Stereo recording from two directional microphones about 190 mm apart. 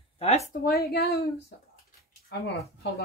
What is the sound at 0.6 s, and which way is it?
Speech, 55° left (ahead or behind).